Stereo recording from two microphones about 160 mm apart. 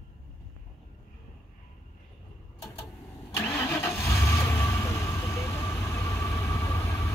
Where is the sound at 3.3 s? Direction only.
15° left (ahead or behind).